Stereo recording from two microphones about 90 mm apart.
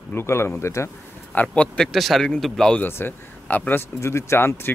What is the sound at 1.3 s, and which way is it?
Speech, 15° left (ahead or behind).